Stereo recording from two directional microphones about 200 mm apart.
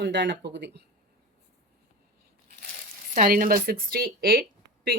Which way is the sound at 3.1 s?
45° right (ahead or behind).